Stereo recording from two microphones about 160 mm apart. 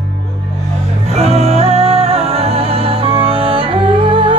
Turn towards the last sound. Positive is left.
turn(degrees=-35)  # may be behind; listen again after turning